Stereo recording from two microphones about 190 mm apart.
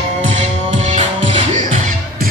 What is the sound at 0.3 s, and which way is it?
Music, 35° right (ahead or behind).